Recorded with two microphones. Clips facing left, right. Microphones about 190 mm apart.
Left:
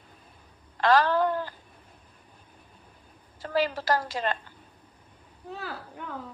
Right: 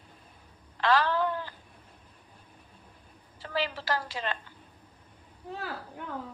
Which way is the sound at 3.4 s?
45° left (ahead or behind).